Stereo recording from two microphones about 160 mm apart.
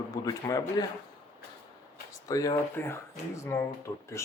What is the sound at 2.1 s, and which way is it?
Speech, 20° left (ahead or behind).